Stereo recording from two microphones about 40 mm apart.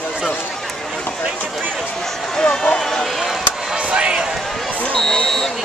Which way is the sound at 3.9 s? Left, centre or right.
Right.